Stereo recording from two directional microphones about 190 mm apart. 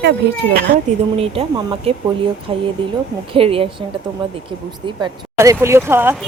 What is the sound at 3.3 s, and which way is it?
Speech, 30° right (ahead or behind).